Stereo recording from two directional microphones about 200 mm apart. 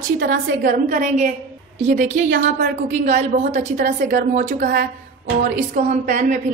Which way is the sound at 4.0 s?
45° right (ahead or behind).